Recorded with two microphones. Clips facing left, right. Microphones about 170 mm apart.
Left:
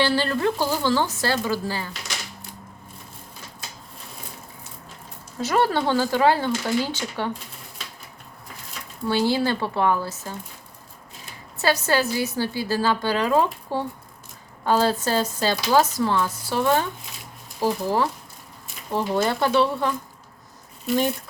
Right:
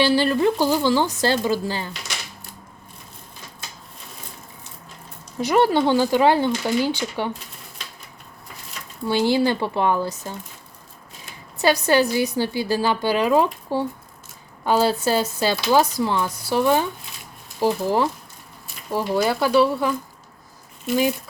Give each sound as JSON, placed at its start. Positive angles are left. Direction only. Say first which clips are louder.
{"t": 0.0, "sound": "a woman's voice", "louder": "right 4 dB", "side_deg": -15}
{"t": 5.4, "sound": "a woman's voice", "louder": "right 4 dB", "side_deg": -15}
{"t": 9.0, "sound": "a woman's voice", "louder": "right 2 dB", "side_deg": -15}
{"t": 11.5, "sound": "a woman's voice", "louder": "right 4 dB", "side_deg": -15}